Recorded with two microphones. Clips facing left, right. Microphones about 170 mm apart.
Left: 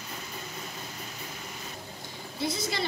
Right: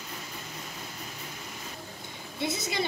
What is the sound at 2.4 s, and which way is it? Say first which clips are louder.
Speech: even; 20° right (ahead or behind).